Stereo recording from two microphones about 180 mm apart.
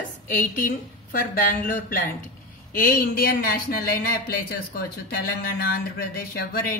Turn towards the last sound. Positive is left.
turn(degrees=55)  # may be behind; listen again after turning